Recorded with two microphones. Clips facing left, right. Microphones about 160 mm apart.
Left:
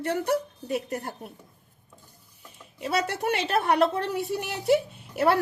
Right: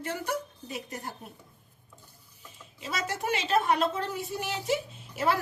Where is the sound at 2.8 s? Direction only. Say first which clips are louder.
Left 6 dB; 60° left (ahead or behind).